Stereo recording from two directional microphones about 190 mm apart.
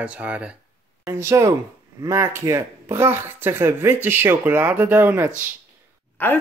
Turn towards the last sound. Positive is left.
turn(degrees=10)  # may be behind; listen again after turning